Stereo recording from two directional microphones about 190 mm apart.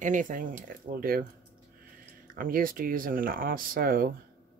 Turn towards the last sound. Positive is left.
turn(degrees=-50)  # may be behind; listen again after turning